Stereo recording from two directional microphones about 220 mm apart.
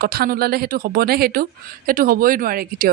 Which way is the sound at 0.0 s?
45° right (ahead or behind).